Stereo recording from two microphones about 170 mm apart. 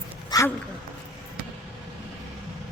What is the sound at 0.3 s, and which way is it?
Dog, 20° left (ahead or behind).